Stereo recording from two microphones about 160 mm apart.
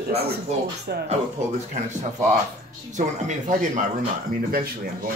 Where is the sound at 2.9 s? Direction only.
50° right (ahead or behind).